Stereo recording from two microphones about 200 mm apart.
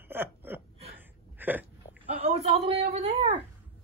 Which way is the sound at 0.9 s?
10° right (ahead or behind).